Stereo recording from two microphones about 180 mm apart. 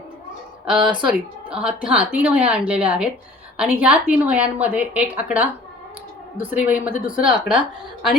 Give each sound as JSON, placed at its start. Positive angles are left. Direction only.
{"t": 0.8, "sound": "speech", "side_deg": -25}
{"t": 1.5, "sound": "a woman's voice", "side_deg": -5}